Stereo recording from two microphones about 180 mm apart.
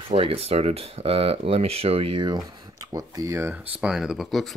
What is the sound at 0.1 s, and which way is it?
Speech, 30° right (ahead or behind).